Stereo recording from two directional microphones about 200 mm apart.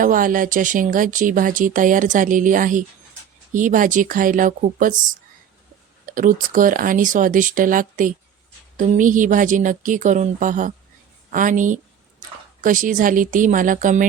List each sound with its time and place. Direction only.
0.0 s speech: 45° right (ahead or behind)
6.1 s speech: 40° right (ahead or behind)